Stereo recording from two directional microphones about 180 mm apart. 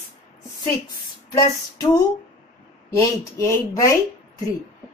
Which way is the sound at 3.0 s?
15° left (ahead or behind).